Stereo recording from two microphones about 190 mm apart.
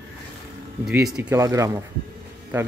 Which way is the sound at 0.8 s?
5° right (ahead or behind).